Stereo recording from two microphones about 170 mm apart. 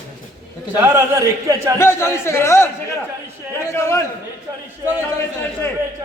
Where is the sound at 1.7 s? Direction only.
15° left (ahead or behind).